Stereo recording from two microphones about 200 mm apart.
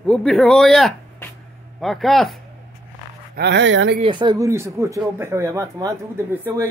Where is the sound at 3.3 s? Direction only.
60° right (ahead or behind).